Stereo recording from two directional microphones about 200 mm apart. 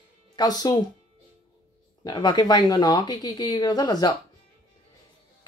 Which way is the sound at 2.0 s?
20° left (ahead or behind).